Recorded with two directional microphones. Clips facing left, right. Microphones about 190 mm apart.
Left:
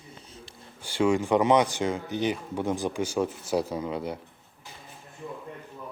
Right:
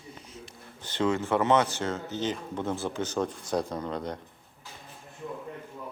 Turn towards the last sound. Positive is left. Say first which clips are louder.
# left 2 dB
turn(degrees=5)  # may be behind; listen again after turning